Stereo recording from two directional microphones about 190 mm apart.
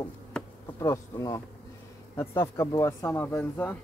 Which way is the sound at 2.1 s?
15° left (ahead or behind).